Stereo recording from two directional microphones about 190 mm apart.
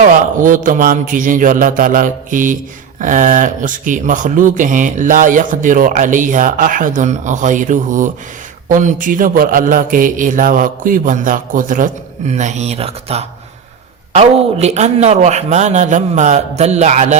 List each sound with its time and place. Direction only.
0.0 s a man's voice: 45° right (ahead or behind)